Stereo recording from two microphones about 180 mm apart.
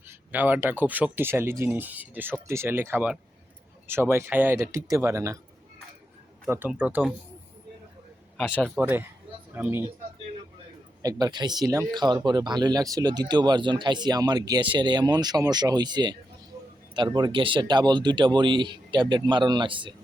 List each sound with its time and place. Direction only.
0.1 s speech: 10° right (ahead or behind)
6.5 s speech: 10° right (ahead or behind)
8.5 s speech: 5° left (ahead or behind)
8.8 s speech: 10° right (ahead or behind)
11.0 s speech: 20° right (ahead or behind)